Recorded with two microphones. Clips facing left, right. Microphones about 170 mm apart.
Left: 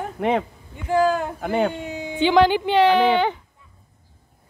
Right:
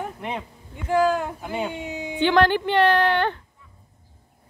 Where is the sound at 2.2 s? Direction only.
15° left (ahead or behind).